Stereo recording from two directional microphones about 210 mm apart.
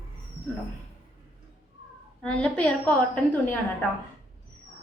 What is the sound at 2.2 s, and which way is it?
Speech, 5° left (ahead or behind).